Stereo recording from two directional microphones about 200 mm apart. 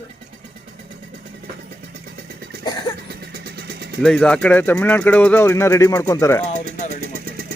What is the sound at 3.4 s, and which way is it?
Vehicle, 55° right (ahead or behind).